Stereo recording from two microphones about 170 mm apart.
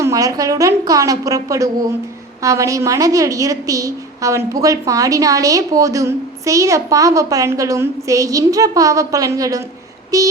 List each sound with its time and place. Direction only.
0.0 s a woman's voice: 20° right (ahead or behind)